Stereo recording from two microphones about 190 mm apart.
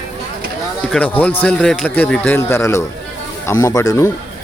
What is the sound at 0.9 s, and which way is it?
A man's voice, 5° left (ahead or behind).